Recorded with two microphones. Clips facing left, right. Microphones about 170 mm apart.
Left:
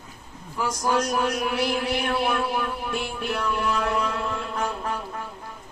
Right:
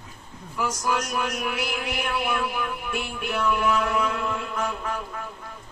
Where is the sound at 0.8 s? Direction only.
35° left (ahead or behind).